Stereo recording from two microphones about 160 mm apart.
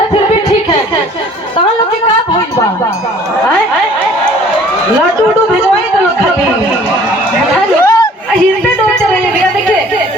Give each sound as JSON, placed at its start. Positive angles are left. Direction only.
{"t": 7.8, "sound": "chatter", "side_deg": 20}